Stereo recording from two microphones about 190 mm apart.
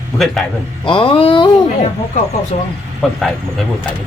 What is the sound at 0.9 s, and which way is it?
Speech, 25° left (ahead or behind).